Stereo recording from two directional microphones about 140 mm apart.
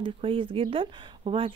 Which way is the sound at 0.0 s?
40° right (ahead or behind).